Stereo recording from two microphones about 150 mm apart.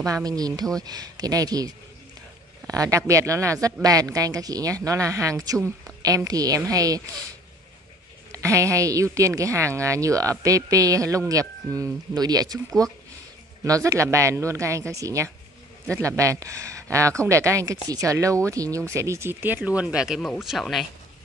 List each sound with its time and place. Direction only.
0.0 s a woman's voice: 25° right (ahead or behind)
8.3 s a woman's voice: 20° right (ahead or behind); by 20.8 s centre (ahead or behind)